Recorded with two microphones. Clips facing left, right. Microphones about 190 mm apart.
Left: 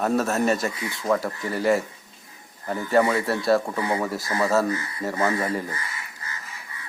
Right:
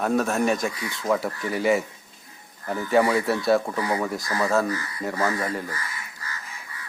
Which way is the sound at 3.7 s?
25° left (ahead or behind).